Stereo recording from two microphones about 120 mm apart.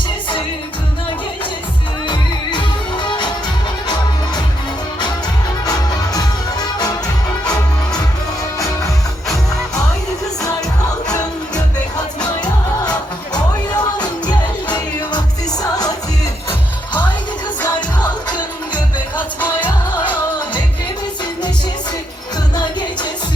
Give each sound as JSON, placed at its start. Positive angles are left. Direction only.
{"t": 3.0, "sound": "music", "side_deg": 40}
{"t": 6.1, "sound": "music", "side_deg": 30}
{"t": 11.1, "sound": "music", "side_deg": 30}
{"t": 13.7, "sound": "music", "side_deg": 35}
{"t": 17.7, "sound": "music", "side_deg": 35}
{"t": 19.1, "sound": "music", "side_deg": 15}
{"t": 22.5, "sound": "music", "side_deg": 40}